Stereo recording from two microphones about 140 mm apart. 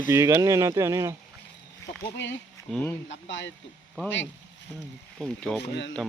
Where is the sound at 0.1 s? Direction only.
20° right (ahead or behind).